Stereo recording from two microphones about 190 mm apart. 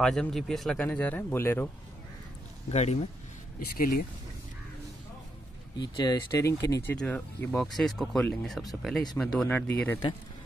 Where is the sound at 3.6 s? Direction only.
55° left (ahead or behind).